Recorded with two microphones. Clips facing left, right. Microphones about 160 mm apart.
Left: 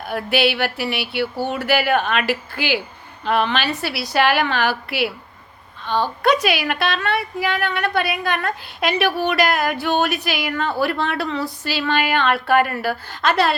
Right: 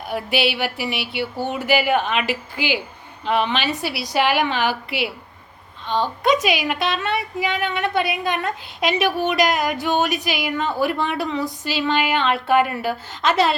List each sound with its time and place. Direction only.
0.1 s a woman's voice: 15° right (ahead or behind)